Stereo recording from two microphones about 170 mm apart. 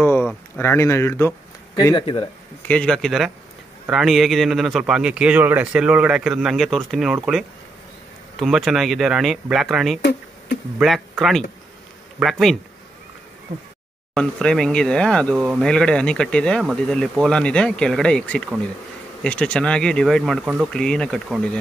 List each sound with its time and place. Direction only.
0.0 s a sound: 10° left (ahead or behind)
0.6 s speech: 15° left (ahead or behind)
1.8 s speech: 25° left (ahead or behind)
2.7 s a man's voice: 5° left (ahead or behind)
8.4 s a man's voice: centre (ahead or behind)
14.1 s a man's voice: 5° left (ahead or behind)
20.4 s speech: 10° right (ahead or behind)
20.7 s a man's voice: 5° left (ahead or behind)